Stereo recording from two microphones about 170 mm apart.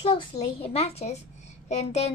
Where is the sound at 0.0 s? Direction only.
35° left (ahead or behind).